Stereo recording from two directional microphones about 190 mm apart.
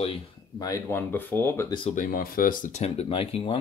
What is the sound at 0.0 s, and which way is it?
Speech, 30° left (ahead or behind).